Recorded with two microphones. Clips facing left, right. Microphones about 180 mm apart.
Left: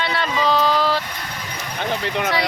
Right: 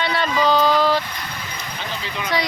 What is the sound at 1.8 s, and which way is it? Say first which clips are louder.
Speech: left 8 dB; 60° left (ahead or behind).